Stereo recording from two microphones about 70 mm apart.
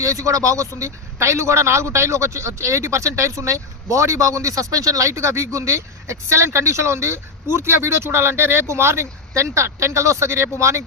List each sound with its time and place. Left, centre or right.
0.0 s speech: right